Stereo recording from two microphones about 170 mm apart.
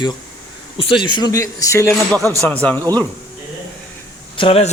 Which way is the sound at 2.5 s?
10° left (ahead or behind).